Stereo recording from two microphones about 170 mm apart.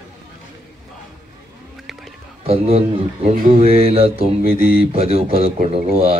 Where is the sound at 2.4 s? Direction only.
35° right (ahead or behind).